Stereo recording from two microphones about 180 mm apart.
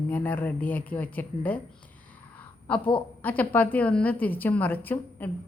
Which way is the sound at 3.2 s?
10° left (ahead or behind).